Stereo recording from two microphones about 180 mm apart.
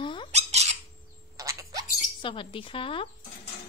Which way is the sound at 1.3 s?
15° right (ahead or behind).